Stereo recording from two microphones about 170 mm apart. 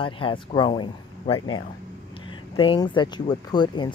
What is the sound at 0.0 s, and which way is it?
Speech, 30° left (ahead or behind).